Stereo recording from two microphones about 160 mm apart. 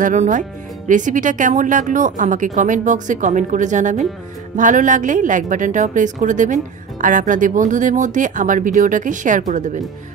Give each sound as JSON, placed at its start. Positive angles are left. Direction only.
{"t": 0.0, "sound": "a woman's voice", "side_deg": -50}